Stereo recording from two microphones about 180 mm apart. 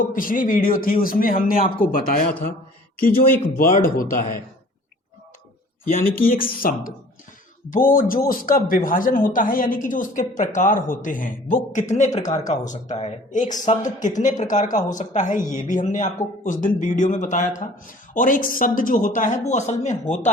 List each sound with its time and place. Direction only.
0.1 s speech: 50° left (ahead or behind)
3.6 s speech: 50° left (ahead or behind)
5.8 s speech: 50° left (ahead or behind)